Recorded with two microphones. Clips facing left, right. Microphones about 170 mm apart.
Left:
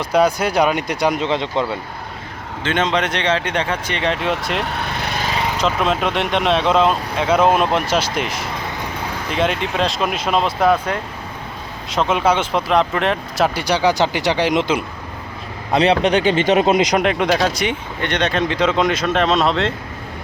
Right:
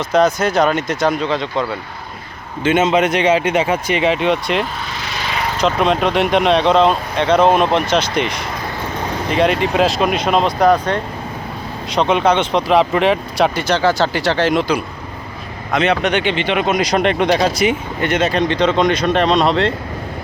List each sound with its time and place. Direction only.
0.0 s speech: 10° left (ahead or behind)
2.6 s speech: 10° right (ahead or behind)
4.6 s vehicle: 60° left (ahead or behind)
5.5 s speech: centre (ahead or behind)
13.7 s speech: 15° left (ahead or behind)
15.7 s speech: 30° left (ahead or behind)
17.0 s speech: 5° left (ahead or behind)